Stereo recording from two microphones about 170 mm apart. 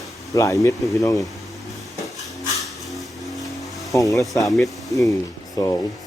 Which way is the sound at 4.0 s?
20° left (ahead or behind).